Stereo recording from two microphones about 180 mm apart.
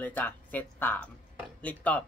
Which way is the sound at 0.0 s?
10° left (ahead or behind).